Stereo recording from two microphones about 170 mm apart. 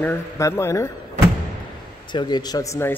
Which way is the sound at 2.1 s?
25° left (ahead or behind).